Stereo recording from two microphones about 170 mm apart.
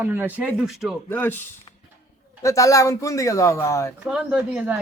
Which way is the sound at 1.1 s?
10° left (ahead or behind).